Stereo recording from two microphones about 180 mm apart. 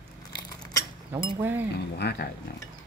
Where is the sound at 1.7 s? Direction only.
65° left (ahead or behind).